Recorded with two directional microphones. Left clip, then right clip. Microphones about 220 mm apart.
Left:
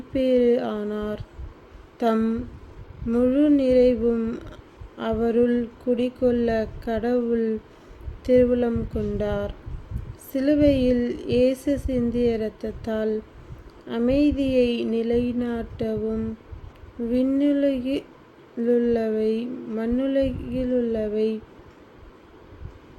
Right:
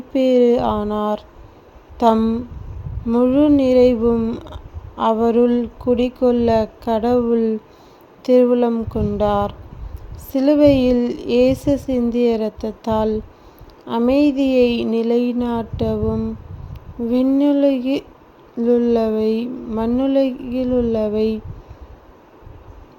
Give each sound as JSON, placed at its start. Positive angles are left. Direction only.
{"t": 0.1, "sound": "a woman's voice", "side_deg": -20}
{"t": 17.1, "sound": "speech", "side_deg": -20}